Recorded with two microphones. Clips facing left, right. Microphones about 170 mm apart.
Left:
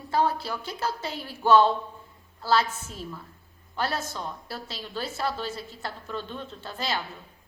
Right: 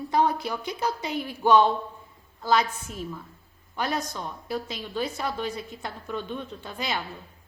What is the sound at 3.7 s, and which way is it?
A woman's voice, 15° right (ahead or behind).